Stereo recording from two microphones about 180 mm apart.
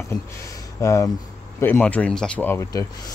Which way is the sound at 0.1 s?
15° left (ahead or behind).